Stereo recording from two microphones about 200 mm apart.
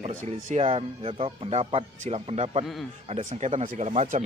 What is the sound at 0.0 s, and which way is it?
Speech, 40° right (ahead or behind).